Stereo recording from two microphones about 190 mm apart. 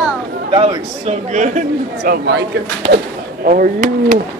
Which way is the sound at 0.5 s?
30° right (ahead or behind).